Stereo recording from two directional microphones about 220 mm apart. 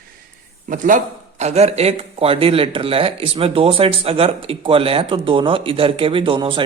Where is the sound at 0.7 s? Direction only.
35° right (ahead or behind).